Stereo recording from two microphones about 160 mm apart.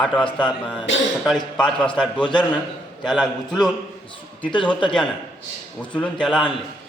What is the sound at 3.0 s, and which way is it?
Speech, centre (ahead or behind).